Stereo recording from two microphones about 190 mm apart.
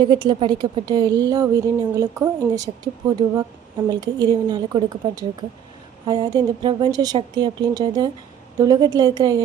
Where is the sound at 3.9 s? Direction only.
20° right (ahead or behind).